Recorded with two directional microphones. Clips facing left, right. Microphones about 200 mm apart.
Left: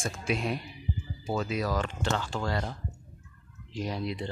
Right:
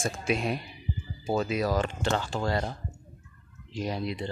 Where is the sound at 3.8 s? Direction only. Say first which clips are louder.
Right 1 dB; 5° right (ahead or behind).